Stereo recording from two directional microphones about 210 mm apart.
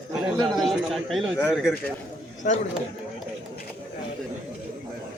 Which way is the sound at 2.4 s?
40° left (ahead or behind).